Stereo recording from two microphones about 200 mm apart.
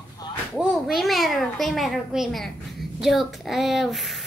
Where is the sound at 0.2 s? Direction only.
20° left (ahead or behind).